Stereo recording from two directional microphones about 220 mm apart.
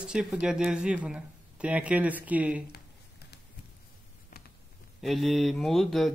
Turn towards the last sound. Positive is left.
turn(degrees=0)  # may be behind; listen again after turning